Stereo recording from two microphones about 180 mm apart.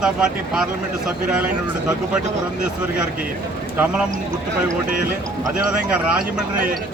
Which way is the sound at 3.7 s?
10° right (ahead or behind).